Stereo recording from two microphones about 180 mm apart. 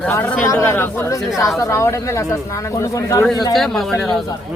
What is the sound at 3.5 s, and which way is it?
Speech, centre (ahead or behind).